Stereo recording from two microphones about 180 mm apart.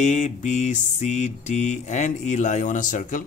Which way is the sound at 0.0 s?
40° left (ahead or behind).